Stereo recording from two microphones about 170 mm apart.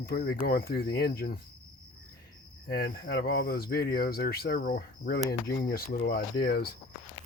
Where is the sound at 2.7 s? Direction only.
65° left (ahead or behind).